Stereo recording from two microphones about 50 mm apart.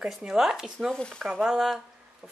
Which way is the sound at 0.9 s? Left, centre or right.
Centre.